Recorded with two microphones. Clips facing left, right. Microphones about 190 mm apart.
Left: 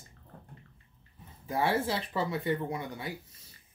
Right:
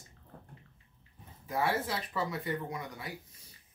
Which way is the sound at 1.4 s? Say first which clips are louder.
Left 3 dB; 30° left (ahead or behind).